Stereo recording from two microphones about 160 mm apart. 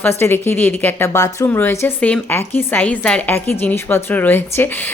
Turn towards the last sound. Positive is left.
turn(degrees=10)  # may be behind; listen again after turning